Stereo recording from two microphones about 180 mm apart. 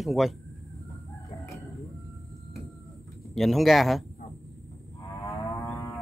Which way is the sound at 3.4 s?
Centre (ahead or behind).